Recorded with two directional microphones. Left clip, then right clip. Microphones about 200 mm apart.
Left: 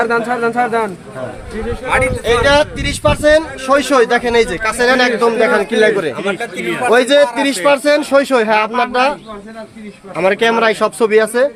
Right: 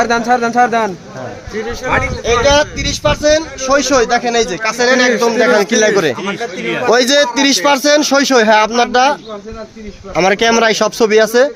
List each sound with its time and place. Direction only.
0.0 s speech: 40° right (ahead or behind)
2.2 s speech: 15° right (ahead or behind)
5.4 s speech: 45° right (ahead or behind)
10.2 s speech: 50° right (ahead or behind)